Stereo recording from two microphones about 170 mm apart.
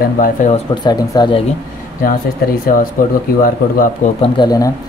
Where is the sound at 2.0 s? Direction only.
55° left (ahead or behind).